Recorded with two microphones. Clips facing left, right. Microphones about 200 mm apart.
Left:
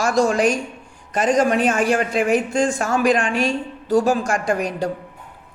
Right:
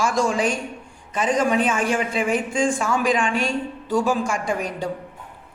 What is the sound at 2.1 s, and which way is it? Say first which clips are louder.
Speech: left 5 dB; 40° left (ahead or behind).